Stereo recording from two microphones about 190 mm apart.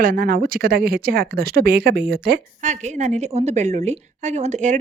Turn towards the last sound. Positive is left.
turn(degrees=-40)  # may be behind; listen again after turning